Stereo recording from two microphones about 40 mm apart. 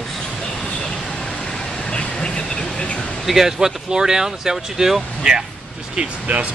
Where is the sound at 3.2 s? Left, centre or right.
Centre.